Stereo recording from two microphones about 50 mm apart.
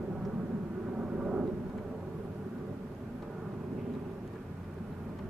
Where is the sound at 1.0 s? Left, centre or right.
Centre.